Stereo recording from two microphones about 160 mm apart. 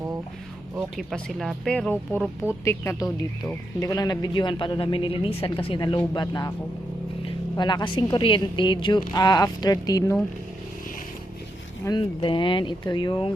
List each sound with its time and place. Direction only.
0.8 s speech: centre (ahead or behind); by 6.5 s 25° left (ahead or behind)
7.5 s speech: 30° left (ahead or behind)
11.9 s speech: 30° left (ahead or behind)